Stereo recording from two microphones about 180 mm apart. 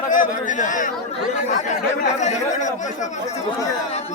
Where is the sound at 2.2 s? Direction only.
40° left (ahead or behind).